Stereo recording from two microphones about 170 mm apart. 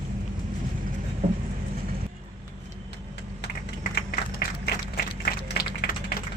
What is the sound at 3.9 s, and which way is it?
Applause, 65° left (ahead or behind).